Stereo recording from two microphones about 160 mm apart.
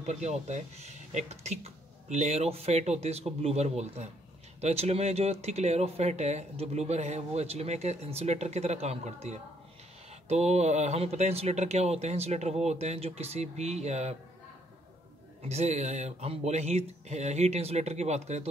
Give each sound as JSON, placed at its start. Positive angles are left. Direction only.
{"t": 0.0, "sound": "speech", "side_deg": -45}
{"t": 15.4, "sound": "speech", "side_deg": -45}